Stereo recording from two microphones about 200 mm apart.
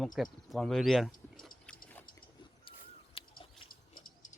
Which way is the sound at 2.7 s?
25° left (ahead or behind).